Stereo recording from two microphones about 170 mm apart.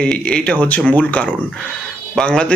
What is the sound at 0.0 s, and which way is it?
Speech, 5° left (ahead or behind).